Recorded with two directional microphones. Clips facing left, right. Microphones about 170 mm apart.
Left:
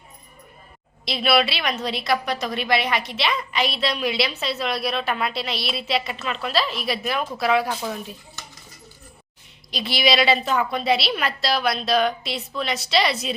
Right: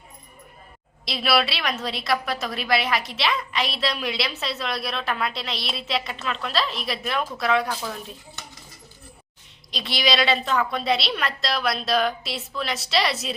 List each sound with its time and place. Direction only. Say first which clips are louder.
1.0 s a woman's voice: left 2 dB; centre (ahead or behind)
7.7 s speech: left 3 dB; 15° left (ahead or behind)
9.7 s a woman's voice: left 3 dB; centre (ahead or behind)